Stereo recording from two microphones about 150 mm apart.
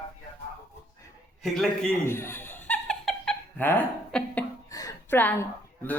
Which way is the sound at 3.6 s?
15° left (ahead or behind).